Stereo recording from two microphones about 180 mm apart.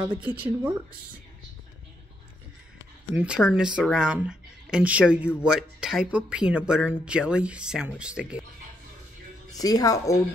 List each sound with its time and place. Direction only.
0.3 s speech: 10° right (ahead or behind)
3.2 s speech: 5° right (ahead or behind)
9.5 s a woman's voice: 20° left (ahead or behind)